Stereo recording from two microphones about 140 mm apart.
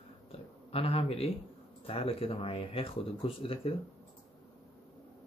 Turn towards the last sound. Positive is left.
turn(degrees=40)  # may be behind; listen again after turning